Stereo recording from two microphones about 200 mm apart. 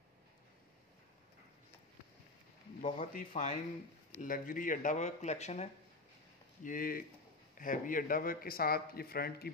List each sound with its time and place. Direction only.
2.8 s a man's voice: 40° left (ahead or behind)